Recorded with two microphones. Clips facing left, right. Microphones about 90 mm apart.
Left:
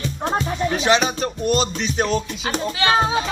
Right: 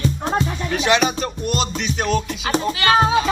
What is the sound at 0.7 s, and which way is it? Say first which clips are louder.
Music: right 1 dB; 35° left (ahead or behind).